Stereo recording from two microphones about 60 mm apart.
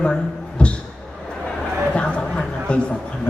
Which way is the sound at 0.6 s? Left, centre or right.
Centre.